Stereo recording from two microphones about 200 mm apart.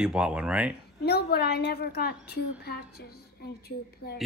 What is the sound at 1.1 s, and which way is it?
A woman's voice, 55° left (ahead or behind).